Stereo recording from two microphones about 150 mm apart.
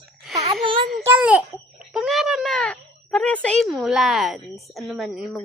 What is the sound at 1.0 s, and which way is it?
A child's voice, 10° right (ahead or behind).